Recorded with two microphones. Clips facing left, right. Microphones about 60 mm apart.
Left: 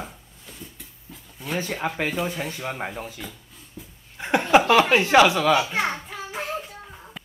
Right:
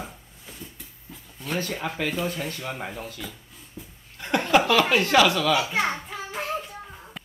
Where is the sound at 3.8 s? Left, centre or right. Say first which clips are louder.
Even; centre.